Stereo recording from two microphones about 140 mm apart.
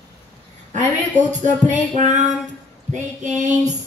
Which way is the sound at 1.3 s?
60° right (ahead or behind).